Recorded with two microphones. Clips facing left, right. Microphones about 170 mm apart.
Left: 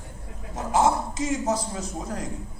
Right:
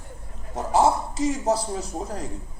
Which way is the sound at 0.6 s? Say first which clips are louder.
Right 2 dB; 35° right (ahead or behind).